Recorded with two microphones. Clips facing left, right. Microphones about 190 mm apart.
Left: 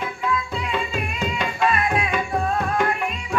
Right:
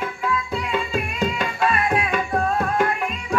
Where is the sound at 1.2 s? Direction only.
Centre (ahead or behind).